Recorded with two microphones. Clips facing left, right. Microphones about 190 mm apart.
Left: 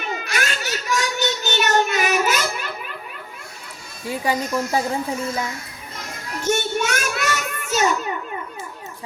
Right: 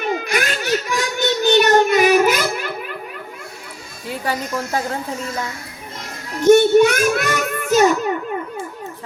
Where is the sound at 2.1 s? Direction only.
60° right (ahead or behind).